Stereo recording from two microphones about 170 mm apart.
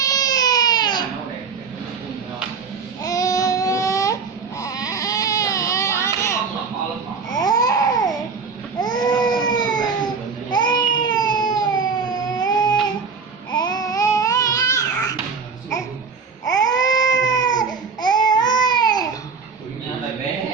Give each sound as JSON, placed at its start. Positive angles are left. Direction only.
{"t": 0.0, "sound": "baby cry", "side_deg": 20}
{"t": 3.0, "sound": "baby cry", "side_deg": 20}
{"t": 7.3, "sound": "babbling", "side_deg": 25}
{"t": 8.8, "sound": "baby cry", "side_deg": 25}
{"t": 13.5, "sound": "babbling", "side_deg": 25}
{"t": 16.5, "sound": "baby cry", "side_deg": 20}